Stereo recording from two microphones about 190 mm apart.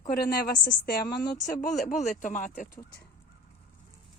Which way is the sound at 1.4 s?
40° left (ahead or behind).